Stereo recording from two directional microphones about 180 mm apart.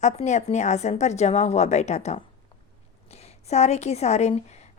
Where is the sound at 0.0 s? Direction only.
40° left (ahead or behind).